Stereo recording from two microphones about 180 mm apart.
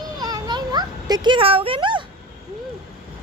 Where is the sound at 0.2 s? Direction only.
20° right (ahead or behind).